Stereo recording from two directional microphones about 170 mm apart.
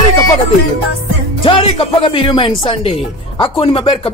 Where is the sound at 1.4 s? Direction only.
30° left (ahead or behind).